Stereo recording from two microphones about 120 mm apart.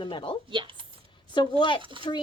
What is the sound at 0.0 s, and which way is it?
Speech, 45° left (ahead or behind).